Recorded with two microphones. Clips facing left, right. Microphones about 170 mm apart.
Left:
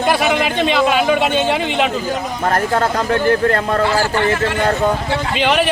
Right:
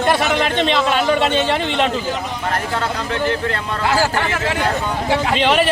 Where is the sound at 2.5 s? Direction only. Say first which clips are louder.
Left 6 dB; 45° left (ahead or behind).